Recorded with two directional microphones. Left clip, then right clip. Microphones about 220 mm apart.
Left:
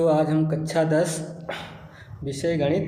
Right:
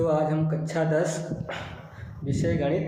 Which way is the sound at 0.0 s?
45° left (ahead or behind).